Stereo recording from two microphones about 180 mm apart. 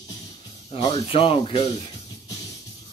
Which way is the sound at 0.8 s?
25° left (ahead or behind).